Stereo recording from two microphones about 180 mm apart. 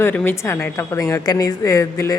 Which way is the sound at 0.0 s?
10° left (ahead or behind).